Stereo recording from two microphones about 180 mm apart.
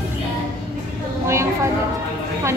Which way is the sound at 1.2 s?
15° right (ahead or behind).